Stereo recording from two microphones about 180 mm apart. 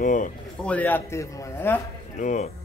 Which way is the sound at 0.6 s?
5° left (ahead or behind).